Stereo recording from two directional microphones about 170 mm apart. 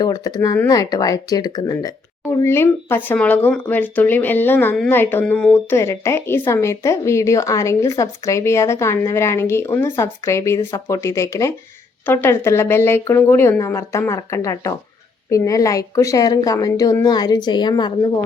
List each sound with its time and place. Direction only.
0.0 s a woman's voice: 20° left (ahead or behind)